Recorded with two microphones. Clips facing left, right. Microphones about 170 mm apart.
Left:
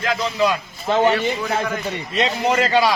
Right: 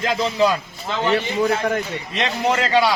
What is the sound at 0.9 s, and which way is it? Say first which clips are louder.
Speech: left 3 dB; 50° left (ahead or behind).